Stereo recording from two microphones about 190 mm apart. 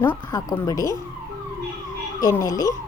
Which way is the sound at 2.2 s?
15° left (ahead or behind).